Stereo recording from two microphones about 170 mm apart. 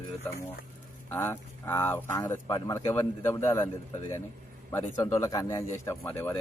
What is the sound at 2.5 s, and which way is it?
Speech, 25° left (ahead or behind).